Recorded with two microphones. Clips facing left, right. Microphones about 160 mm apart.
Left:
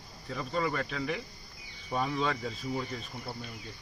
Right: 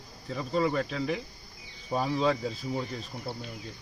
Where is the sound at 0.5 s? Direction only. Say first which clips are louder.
Right 5 dB; 30° right (ahead or behind).